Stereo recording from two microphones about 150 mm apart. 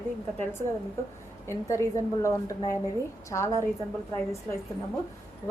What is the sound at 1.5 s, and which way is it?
A woman's voice, 20° left (ahead or behind).